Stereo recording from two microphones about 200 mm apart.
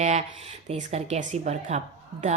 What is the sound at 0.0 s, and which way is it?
Speech, 35° right (ahead or behind).